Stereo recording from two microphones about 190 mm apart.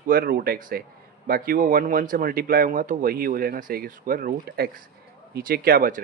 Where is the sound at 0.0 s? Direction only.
50° right (ahead or behind).